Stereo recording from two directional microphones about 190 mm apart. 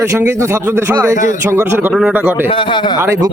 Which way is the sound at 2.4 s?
25° left (ahead or behind).